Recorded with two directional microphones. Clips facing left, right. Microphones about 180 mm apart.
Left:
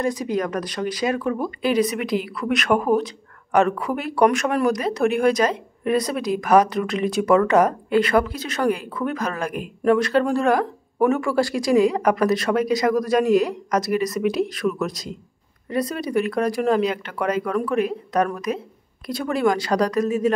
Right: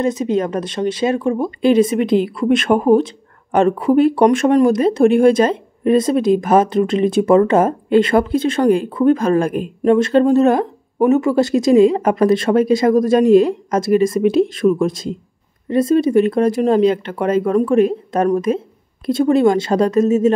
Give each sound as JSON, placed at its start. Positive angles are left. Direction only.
{"t": 0.0, "sound": "speech", "side_deg": -25}